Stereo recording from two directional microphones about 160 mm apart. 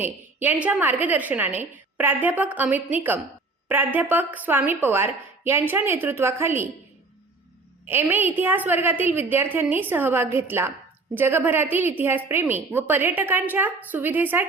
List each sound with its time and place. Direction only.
0.0 s a woman's voice: 10° right (ahead or behind)
7.9 s a woman's voice: 10° right (ahead or behind)